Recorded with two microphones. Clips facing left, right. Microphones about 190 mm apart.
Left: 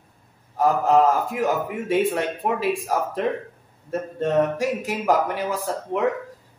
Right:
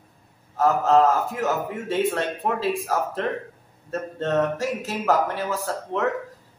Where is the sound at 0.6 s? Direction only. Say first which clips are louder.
Even; 15° left (ahead or behind).